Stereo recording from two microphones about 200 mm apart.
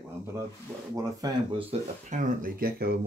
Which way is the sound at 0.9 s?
20° right (ahead or behind).